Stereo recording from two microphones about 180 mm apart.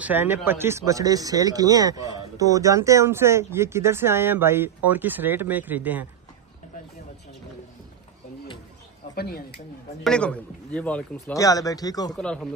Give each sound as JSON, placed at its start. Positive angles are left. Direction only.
{"t": 0.0, "sound": "speech", "side_deg": -10}
{"t": 9.1, "sound": "a woman's voice", "side_deg": 60}
{"t": 10.0, "sound": "a man's voice", "side_deg": 5}
{"t": 11.3, "sound": "speech", "side_deg": 20}
{"t": 12.1, "sound": "speech", "side_deg": 5}